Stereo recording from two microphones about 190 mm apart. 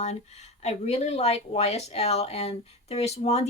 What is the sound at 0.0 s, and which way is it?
Speech, 35° left (ahead or behind).